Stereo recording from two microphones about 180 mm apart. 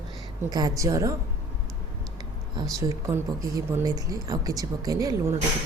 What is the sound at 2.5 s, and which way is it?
Speech, 20° right (ahead or behind).